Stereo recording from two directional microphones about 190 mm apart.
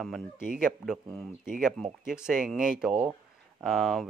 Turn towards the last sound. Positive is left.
turn(degrees=0)  # may be behind; listen again after turning